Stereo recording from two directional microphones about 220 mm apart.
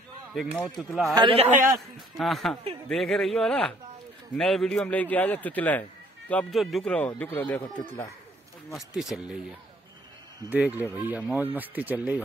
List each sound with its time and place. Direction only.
0.3 s a man's voice: centre (ahead or behind)
1.1 s a man's voice: 25° right (ahead or behind)
2.1 s a man's voice: centre (ahead or behind)
10.5 s speech: 10° right (ahead or behind)